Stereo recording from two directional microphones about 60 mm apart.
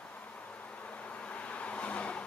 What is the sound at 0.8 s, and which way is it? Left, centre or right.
Vehicle, left.